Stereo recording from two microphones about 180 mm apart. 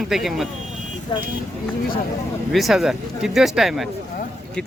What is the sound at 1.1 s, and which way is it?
Speech, 25° left (ahead or behind).